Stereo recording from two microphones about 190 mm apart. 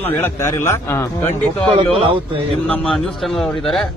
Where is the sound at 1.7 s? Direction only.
30° right (ahead or behind).